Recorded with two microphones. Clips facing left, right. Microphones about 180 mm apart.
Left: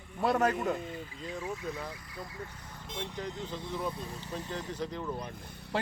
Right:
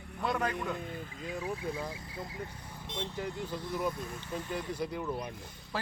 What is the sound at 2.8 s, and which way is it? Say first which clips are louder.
Speech: right 1 dB; 10° left (ahead or behind).